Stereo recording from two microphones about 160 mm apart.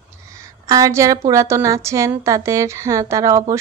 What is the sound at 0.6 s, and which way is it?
A woman's voice, 20° right (ahead or behind).